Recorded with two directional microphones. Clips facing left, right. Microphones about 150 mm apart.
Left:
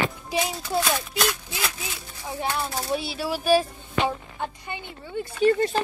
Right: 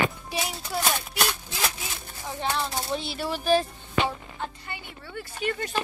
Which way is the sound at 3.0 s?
5° left (ahead or behind).